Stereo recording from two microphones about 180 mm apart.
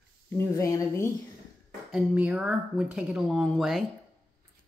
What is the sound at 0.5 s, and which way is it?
Speech, 15° left (ahead or behind).